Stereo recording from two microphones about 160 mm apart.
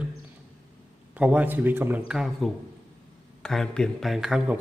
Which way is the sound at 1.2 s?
10° right (ahead or behind).